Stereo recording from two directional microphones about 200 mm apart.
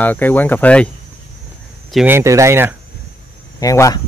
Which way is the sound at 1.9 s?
10° right (ahead or behind).